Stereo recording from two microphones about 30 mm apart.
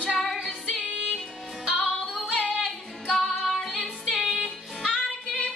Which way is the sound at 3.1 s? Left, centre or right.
Centre.